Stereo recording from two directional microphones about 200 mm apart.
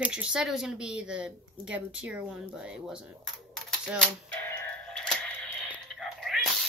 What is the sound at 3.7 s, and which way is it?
Typewriter, centre (ahead or behind).